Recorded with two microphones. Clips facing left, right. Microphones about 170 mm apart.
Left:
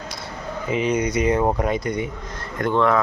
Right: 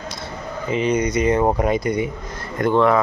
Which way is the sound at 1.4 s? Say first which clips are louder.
Right 2 dB; 15° right (ahead or behind).